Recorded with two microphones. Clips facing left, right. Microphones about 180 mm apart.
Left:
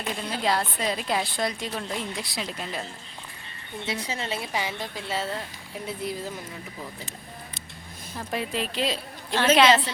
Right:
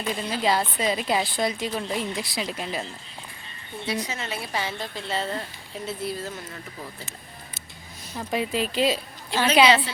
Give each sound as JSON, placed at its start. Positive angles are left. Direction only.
{"t": 0.2, "sound": "a woman's voice", "side_deg": 0}
{"t": 3.8, "sound": "a woman's voice", "side_deg": 30}
{"t": 4.5, "sound": "a woman's voice", "side_deg": 15}
{"t": 5.8, "sound": "a woman's voice", "side_deg": 15}
{"t": 8.1, "sound": "a woman's voice", "side_deg": -5}